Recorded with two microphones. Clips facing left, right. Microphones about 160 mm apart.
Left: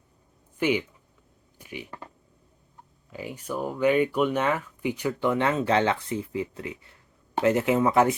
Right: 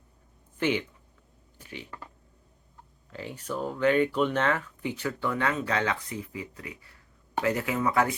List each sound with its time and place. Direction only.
0.6 s speech: 10° left (ahead or behind)
1.5 s a sound: 10° left (ahead or behind)
3.1 s speech: 10° left (ahead or behind)